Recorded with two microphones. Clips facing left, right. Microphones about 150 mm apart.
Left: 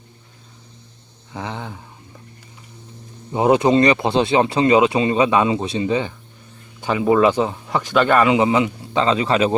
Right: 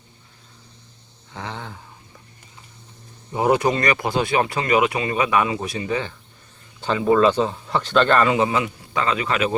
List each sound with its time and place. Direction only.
1.3 s speech: 15° left (ahead or behind)
3.3 s speech: 20° left (ahead or behind)